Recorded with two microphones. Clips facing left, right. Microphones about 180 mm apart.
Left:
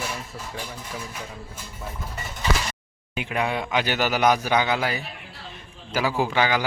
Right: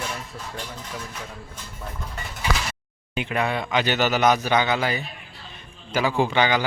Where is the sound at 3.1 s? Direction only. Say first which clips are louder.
Right 1 dB; 10° left (ahead or behind).